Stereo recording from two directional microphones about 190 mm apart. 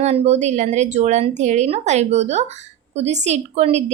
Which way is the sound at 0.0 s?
35° right (ahead or behind).